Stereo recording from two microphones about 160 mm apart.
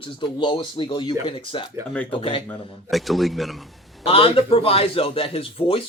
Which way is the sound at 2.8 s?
Centre (ahead or behind).